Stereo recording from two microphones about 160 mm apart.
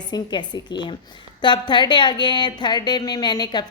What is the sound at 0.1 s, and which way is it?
A woman's voice, 25° left (ahead or behind).